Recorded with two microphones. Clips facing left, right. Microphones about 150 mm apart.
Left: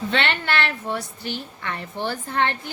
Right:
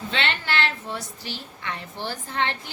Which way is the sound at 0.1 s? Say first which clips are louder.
Left 2 dB; 60° left (ahead or behind).